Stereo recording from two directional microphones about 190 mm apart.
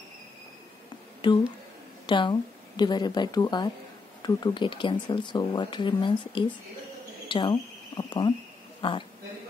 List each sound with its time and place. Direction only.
1.2 s speech: 25° left (ahead or behind)